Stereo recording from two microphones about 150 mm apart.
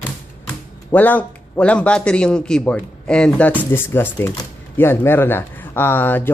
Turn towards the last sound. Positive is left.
turn(degrees=15)  # may be behind; listen again after turning